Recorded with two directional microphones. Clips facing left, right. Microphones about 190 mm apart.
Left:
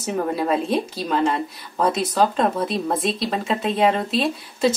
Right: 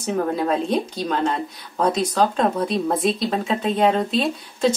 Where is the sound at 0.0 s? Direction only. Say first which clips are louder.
Right 1 dB; 5° left (ahead or behind).